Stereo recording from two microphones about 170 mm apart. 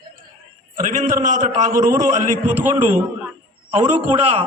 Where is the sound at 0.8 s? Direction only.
50° right (ahead or behind).